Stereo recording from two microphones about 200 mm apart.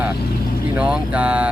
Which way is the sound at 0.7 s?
5° right (ahead or behind).